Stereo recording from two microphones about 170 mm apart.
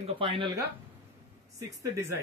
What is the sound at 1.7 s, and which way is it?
Speech, 20° right (ahead or behind).